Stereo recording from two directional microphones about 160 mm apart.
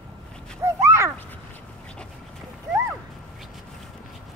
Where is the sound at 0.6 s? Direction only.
20° right (ahead or behind).